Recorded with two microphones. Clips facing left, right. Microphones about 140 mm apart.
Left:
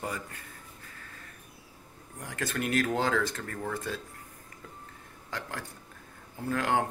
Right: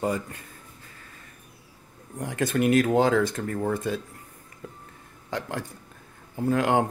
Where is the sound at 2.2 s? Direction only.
20° right (ahead or behind).